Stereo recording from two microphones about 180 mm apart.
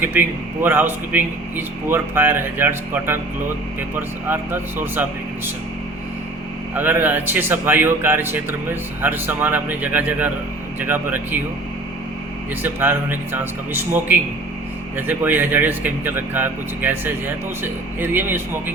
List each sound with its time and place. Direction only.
0.0 s a man's voice: 10° right (ahead or behind)
4.3 s a man's voice: 10° right (ahead or behind)
6.7 s a man's voice: 10° right (ahead or behind)
12.6 s a man's voice: 10° right (ahead or behind)